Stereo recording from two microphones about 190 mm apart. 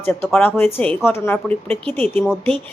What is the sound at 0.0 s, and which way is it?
Speech, 10° left (ahead or behind).